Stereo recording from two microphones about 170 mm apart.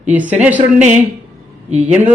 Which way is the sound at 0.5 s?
45° right (ahead or behind).